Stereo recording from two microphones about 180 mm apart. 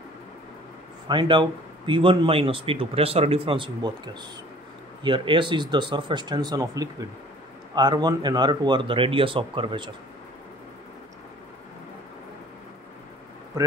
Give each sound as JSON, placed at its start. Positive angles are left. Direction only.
{"t": 1.0, "sound": "a man's voice", "side_deg": -25}